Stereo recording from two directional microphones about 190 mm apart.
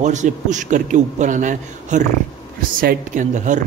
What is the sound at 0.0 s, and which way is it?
A man's voice, 40° right (ahead or behind).